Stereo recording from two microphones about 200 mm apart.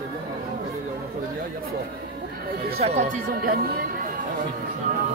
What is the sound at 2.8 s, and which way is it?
Speech, 35° right (ahead or behind).